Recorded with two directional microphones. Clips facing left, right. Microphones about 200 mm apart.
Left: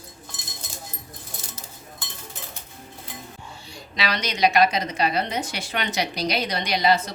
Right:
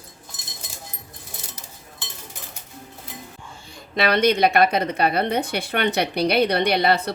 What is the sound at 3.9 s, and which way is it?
A woman's voice, 55° right (ahead or behind).